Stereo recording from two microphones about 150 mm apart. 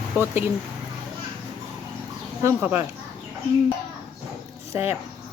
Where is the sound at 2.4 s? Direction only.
15° right (ahead or behind).